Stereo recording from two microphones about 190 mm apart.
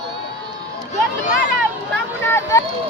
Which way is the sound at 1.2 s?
45° left (ahead or behind).